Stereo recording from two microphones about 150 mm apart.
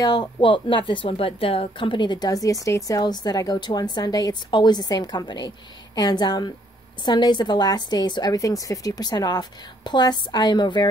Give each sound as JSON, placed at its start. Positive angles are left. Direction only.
{"t": 0.0, "sound": "a woman's voice", "side_deg": 30}